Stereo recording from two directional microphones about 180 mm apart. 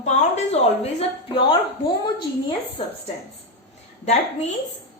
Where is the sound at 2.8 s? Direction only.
30° left (ahead or behind).